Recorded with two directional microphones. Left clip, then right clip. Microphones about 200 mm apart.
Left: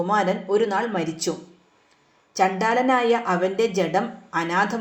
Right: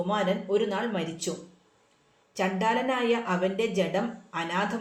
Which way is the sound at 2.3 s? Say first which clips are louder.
Left 6 dB; 30° left (ahead or behind).